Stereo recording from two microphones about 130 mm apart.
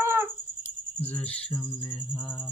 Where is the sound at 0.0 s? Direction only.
20° right (ahead or behind).